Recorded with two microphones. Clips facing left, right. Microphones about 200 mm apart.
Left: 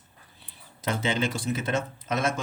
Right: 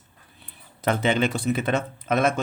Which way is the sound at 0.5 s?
60° right (ahead or behind).